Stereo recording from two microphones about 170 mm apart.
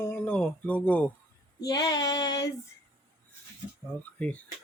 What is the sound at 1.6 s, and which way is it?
Female singing, 20° left (ahead or behind).